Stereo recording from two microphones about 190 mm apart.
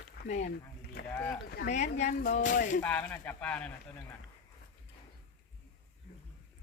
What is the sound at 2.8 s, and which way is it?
Speech, 10° left (ahead or behind).